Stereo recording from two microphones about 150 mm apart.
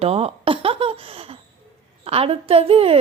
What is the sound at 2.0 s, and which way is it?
Speech, 40° right (ahead or behind).